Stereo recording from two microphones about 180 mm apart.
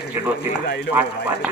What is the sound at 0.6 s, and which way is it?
Speech, 60° left (ahead or behind).